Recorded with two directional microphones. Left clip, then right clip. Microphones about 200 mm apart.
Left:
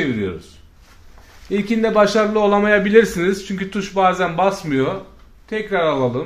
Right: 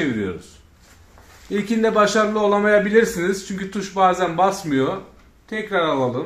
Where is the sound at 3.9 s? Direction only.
40° left (ahead or behind).